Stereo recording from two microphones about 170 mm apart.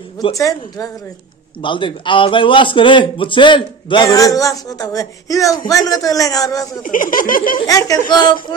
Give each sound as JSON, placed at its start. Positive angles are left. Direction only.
{"t": 0.2, "sound": "a man's voice", "side_deg": 20}
{"t": 6.8, "sound": "speech", "side_deg": 55}
{"t": 7.5, "sound": "a man's voice", "side_deg": 20}